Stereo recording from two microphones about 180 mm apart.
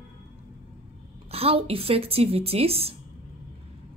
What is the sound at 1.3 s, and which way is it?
A woman's voice, 35° right (ahead or behind).